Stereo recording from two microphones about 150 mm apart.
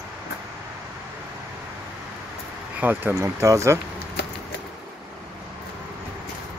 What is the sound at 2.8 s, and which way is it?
Speech, 10° right (ahead or behind).